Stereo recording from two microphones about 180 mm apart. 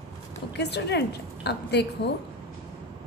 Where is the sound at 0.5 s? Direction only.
70° left (ahead or behind).